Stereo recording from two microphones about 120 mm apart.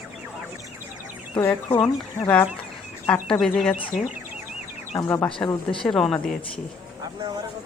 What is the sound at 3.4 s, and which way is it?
Speech, 5° left (ahead or behind).